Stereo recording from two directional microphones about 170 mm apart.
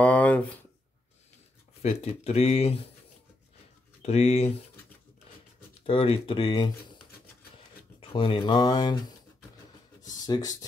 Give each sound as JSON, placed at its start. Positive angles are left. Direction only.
{"t": 0.0, "sound": "speech", "side_deg": 10}
{"t": 1.8, "sound": "speech", "side_deg": 40}
{"t": 4.0, "sound": "speech", "side_deg": 40}
{"t": 5.9, "sound": "speech", "side_deg": 35}
{"t": 8.0, "sound": "speech", "side_deg": 30}
{"t": 10.0, "sound": "speech", "side_deg": 20}